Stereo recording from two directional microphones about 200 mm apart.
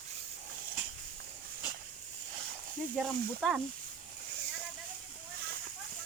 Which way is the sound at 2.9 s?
Centre (ahead or behind).